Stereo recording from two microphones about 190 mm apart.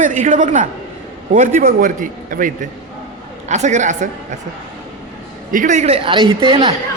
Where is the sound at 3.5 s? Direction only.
40° right (ahead or behind).